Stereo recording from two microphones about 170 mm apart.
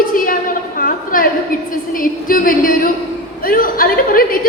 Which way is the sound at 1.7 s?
55° left (ahead or behind).